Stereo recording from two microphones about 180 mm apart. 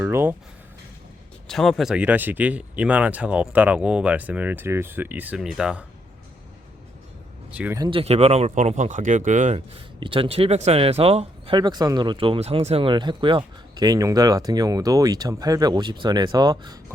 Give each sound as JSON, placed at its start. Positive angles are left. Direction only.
{"t": 0.0, "sound": "speech", "side_deg": -15}
{"t": 1.5, "sound": "speech", "side_deg": 0}
{"t": 7.5, "sound": "speech", "side_deg": -10}
{"t": 7.8, "sound": "speech", "side_deg": -30}
{"t": 9.6, "sound": "speech", "side_deg": -30}